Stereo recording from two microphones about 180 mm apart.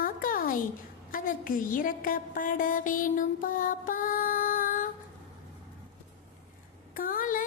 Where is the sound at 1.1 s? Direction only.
50° left (ahead or behind).